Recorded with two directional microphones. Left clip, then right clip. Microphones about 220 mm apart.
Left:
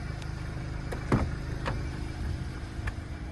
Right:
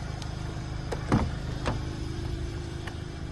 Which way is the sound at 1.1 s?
40° right (ahead or behind).